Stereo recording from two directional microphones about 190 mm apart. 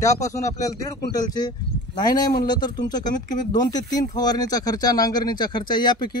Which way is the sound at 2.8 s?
20° left (ahead or behind).